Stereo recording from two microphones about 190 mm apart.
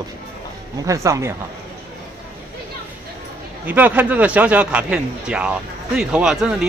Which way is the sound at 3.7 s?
10° right (ahead or behind).